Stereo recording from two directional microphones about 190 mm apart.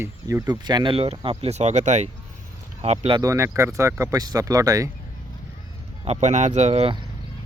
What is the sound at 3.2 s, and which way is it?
Speech, 15° right (ahead or behind).